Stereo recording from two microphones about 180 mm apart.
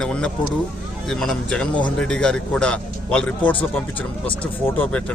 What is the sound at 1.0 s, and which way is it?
A man's voice, centre (ahead or behind).